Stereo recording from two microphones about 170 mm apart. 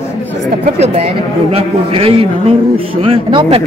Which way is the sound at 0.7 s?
40° right (ahead or behind).